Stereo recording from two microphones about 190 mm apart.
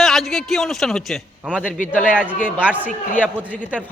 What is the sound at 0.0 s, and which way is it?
A man's voice, centre (ahead or behind).